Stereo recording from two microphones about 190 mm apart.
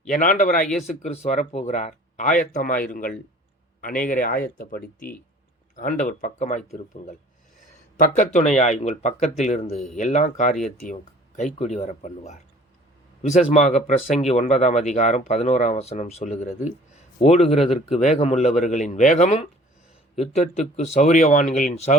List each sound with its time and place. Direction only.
0.1 s speech: 45° left (ahead or behind)
8.1 s speech: 40° left (ahead or behind)
13.5 s speech: 35° left (ahead or behind)